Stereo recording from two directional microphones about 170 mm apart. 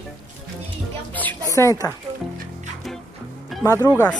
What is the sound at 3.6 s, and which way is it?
Speech, 20° left (ahead or behind).